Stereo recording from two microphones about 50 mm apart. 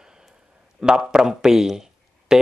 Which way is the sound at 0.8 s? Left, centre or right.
Centre.